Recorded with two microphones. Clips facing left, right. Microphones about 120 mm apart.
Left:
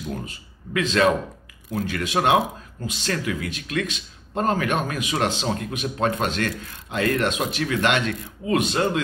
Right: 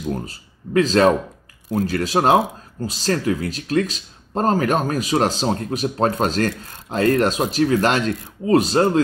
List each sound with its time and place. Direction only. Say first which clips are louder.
0.1 s speech: right 5 dB; 35° right (ahead or behind)